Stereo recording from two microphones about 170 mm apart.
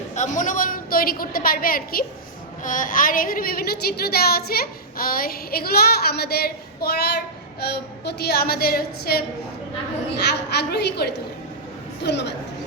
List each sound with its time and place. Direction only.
0.1 s a woman's voice: 45° left (ahead or behind); by 9.2 s 60° left (ahead or behind)
10.2 s a woman's voice: 80° left
12.0 s a woman's voice: 90° left